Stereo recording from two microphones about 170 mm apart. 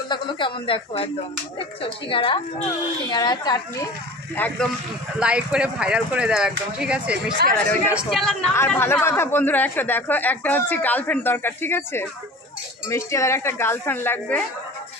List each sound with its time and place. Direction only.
0.1 s speech: 30° left (ahead or behind)
4.4 s a woman's voice: 10° left (ahead or behind)
5.2 s speech: 5° right (ahead or behind)
7.5 s a woman's voice: 15° left (ahead or behind)
7.9 s speech: centre (ahead or behind)
8.5 s a woman's voice: 15° left (ahead or behind)